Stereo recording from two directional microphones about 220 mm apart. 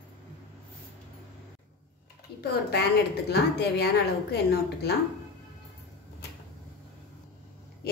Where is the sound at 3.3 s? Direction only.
45° left (ahead or behind).